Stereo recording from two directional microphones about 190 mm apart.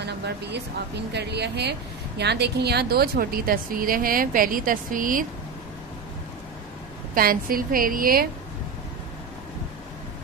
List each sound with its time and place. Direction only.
0.0 s speech: 60° right (ahead or behind); by 5.2 s 45° right (ahead or behind)
7.2 s a woman's voice: 50° right (ahead or behind)